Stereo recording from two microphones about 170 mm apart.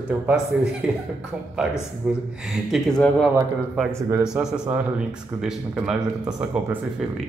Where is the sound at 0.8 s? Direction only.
5° right (ahead or behind).